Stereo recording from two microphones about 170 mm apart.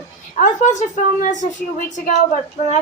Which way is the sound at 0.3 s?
50° left (ahead or behind).